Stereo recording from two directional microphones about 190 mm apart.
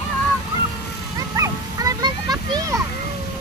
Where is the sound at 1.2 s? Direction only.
20° right (ahead or behind).